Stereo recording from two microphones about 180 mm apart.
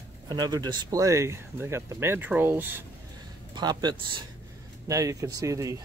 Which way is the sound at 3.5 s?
25° right (ahead or behind).